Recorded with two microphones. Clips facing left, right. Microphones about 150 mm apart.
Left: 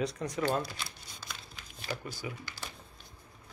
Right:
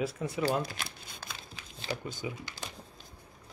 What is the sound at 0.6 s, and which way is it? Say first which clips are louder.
Speech: right 2 dB; 50° right (ahead or behind).